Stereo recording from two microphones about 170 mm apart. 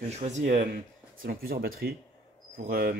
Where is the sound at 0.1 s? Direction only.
40° right (ahead or behind).